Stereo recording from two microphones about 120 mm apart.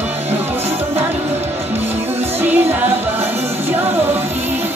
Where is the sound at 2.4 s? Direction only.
15° right (ahead or behind).